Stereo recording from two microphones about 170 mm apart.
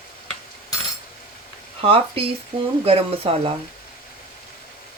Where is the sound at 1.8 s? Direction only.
35° right (ahead or behind).